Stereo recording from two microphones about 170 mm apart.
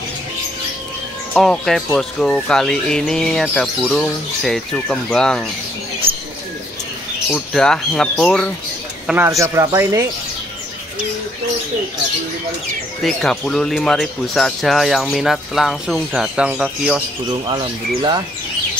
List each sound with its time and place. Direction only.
1.3 s speech: 5° left (ahead or behind)
7.3 s speech: 5° left (ahead or behind)
9.0 s speech: 10° right (ahead or behind)
13.0 s speech: centre (ahead or behind)